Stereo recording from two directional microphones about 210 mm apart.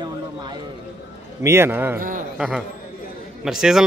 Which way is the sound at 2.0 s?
40° right (ahead or behind).